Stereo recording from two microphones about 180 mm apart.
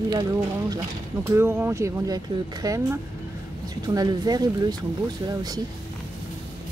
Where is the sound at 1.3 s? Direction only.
10° right (ahead or behind).